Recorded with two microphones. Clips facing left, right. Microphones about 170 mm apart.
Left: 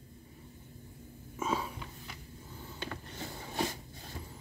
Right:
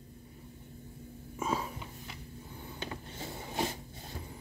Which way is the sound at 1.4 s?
10° right (ahead or behind).